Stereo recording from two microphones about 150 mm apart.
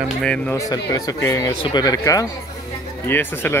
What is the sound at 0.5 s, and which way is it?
Speech, 25° left (ahead or behind).